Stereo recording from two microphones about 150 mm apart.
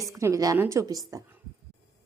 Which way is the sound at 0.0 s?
20° right (ahead or behind).